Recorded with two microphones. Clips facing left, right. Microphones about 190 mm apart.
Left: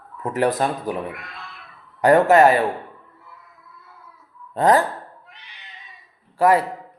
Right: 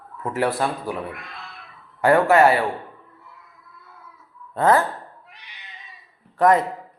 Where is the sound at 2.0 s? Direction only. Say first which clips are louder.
Left 2 dB; 20° left (ahead or behind).